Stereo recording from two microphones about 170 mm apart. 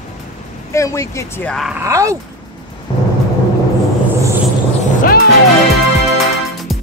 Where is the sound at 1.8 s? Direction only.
20° right (ahead or behind).